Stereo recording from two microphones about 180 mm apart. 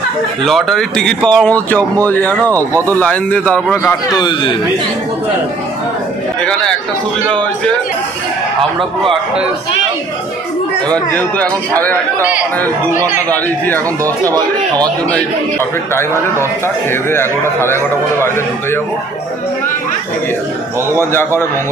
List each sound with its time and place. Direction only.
0.4 s a man's voice: centre (ahead or behind)
4.2 s a man's voice: 25° left (ahead or behind)
6.4 s speech: 5° left (ahead or behind)
10.9 s a man's voice: 5° left (ahead or behind)
14.0 s speech: 20° right (ahead or behind)
16.6 s a man's voice: 15° left (ahead or behind)
21.0 s a man's voice: 15° left (ahead or behind)